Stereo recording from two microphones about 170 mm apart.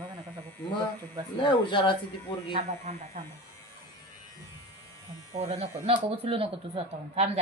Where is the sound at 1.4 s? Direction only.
30° left (ahead or behind).